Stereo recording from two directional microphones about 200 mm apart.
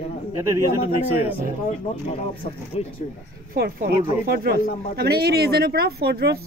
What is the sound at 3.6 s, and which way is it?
Speech, 50° right (ahead or behind).